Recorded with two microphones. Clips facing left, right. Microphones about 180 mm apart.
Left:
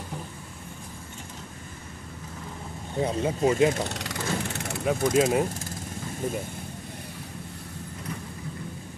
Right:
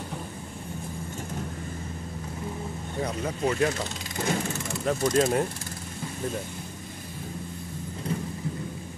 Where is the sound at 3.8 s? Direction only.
70° left (ahead or behind).